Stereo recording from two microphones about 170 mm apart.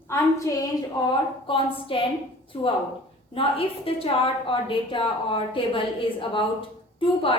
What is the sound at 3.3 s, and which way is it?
A woman's voice, 35° left (ahead or behind).